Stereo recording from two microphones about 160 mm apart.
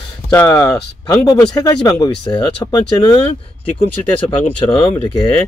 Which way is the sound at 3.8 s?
40° left (ahead or behind).